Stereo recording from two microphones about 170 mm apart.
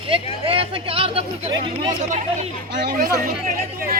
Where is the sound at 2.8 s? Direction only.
55° right (ahead or behind).